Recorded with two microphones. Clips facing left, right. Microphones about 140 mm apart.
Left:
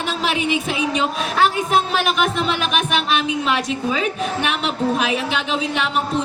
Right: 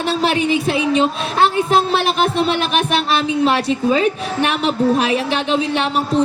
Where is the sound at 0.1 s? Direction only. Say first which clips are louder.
Right 6 dB; 35° right (ahead or behind).